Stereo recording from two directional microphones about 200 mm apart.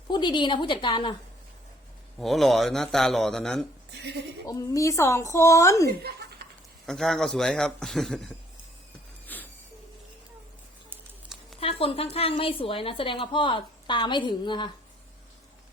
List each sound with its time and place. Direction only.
0.1 s a woman's voice: 20° left (ahead or behind)
2.1 s speech: centre (ahead or behind)
3.9 s speech: 55° right (ahead or behind)
4.4 s speech: 15° left (ahead or behind)
6.0 s chuckle: 55° right (ahead or behind)
6.8 s speech: centre (ahead or behind)
9.2 s a sound: 10° left (ahead or behind)
11.6 s a sound: 30° left (ahead or behind)
12.1 s a woman's voice: 30° left (ahead or behind)